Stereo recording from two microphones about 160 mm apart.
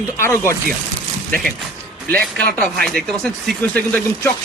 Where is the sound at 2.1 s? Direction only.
5° left (ahead or behind).